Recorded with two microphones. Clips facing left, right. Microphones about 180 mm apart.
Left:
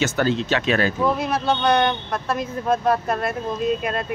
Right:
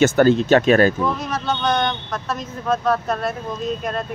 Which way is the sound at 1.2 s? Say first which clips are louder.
Left 2 dB; 10° left (ahead or behind).